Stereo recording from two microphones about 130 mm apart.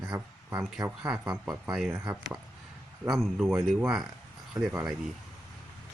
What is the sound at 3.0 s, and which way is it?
Speech, centre (ahead or behind).